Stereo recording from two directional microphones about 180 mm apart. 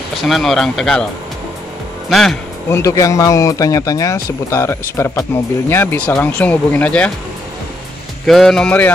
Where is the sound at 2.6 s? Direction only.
15° left (ahead or behind).